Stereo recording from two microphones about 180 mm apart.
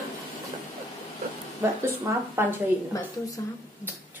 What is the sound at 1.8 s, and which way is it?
Speech, 15° right (ahead or behind).